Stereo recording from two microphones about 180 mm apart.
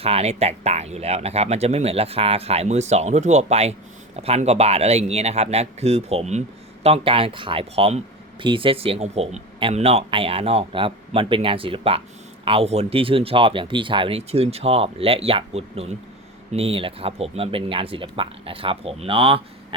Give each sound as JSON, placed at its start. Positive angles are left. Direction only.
{"t": 0.0, "sound": "speech", "side_deg": -35}